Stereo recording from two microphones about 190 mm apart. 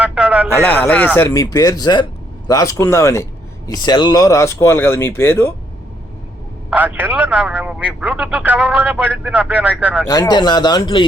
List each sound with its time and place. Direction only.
0.0 s a sound: 5° right (ahead or behind)
0.5 s speech: 10° left (ahead or behind)
6.7 s speech: 10° right (ahead or behind)
10.1 s speech: 20° left (ahead or behind)